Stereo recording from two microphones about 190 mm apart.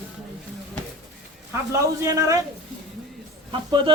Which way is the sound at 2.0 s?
15° right (ahead or behind).